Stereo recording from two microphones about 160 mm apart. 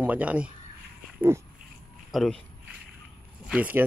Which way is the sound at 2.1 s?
5° left (ahead or behind).